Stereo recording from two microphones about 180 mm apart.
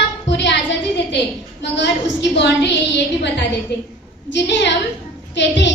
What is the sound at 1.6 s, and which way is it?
A woman's voice, 75° left (ahead or behind).